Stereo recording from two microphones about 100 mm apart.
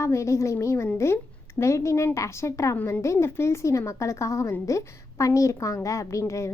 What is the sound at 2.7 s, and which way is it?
A woman's voice, 15° left (ahead or behind).